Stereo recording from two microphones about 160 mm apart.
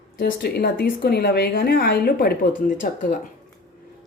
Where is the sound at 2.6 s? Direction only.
55° left (ahead or behind).